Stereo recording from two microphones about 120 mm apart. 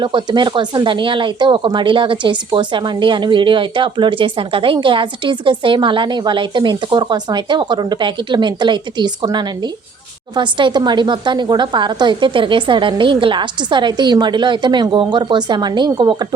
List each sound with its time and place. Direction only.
0.0 s speech: 40° right (ahead or behind)
10.3 s speech: 40° right (ahead or behind)